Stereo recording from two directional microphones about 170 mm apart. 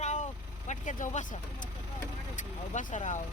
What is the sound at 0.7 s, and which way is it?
Speech, 50° left (ahead or behind).